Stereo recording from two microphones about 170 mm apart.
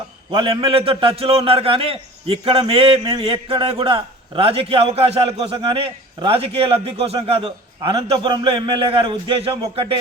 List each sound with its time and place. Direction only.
0.3 s a man's voice: 30° right (ahead or behind)